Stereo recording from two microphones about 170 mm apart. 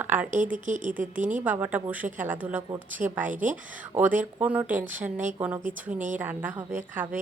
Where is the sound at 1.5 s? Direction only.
10° right (ahead or behind).